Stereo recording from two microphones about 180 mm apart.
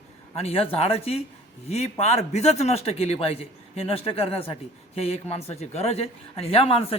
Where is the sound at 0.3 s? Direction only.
35° left (ahead or behind).